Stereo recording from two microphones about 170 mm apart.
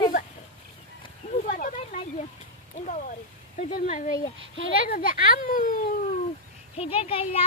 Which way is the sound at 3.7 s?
50° left (ahead or behind).